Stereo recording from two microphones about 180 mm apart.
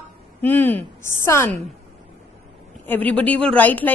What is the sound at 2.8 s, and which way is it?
A woman's voice, 10° left (ahead or behind).